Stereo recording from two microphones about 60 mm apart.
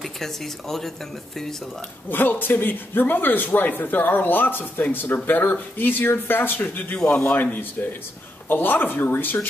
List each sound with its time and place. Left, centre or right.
0.0 s speech: centre
2.0 s speech: left